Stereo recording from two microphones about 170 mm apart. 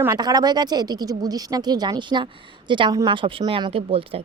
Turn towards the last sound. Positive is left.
turn(degrees=-35)  # may be behind; listen again after turning